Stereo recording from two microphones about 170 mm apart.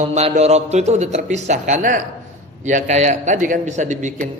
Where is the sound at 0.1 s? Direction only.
40° right (ahead or behind).